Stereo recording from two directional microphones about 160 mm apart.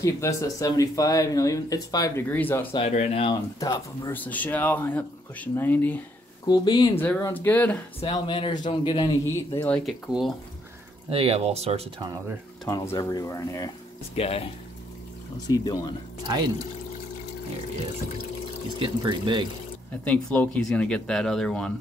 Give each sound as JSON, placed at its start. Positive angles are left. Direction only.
{"t": 0.0, "sound": "speech", "side_deg": 20}
{"t": 2.7, "sound": "a man's voice", "side_deg": 40}
{"t": 3.5, "sound": "speech", "side_deg": 20}
{"t": 6.4, "sound": "speech", "side_deg": 25}
{"t": 8.1, "sound": "a man's voice", "side_deg": 30}
{"t": 9.2, "sound": "speech", "side_deg": 15}
{"t": 9.8, "sound": "speech", "side_deg": 0}
{"t": 11.1, "sound": "speech", "side_deg": -35}
{"t": 12.6, "sound": "speech", "side_deg": 20}
{"t": 14.1, "sound": "a man's voice", "side_deg": 40}
{"t": 15.4, "sound": "speech", "side_deg": 25}
{"t": 18.8, "sound": "speech", "side_deg": -30}
{"t": 20.1, "sound": "speech", "side_deg": 10}